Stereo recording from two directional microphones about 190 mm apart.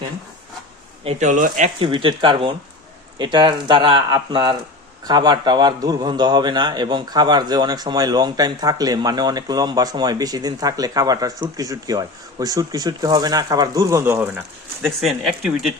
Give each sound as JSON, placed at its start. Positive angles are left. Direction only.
{"t": 1.0, "sound": "speech", "side_deg": -40}
{"t": 1.8, "sound": "a man's voice", "side_deg": -25}